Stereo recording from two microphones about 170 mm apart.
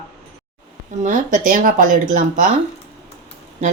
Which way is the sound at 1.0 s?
50° right (ahead or behind).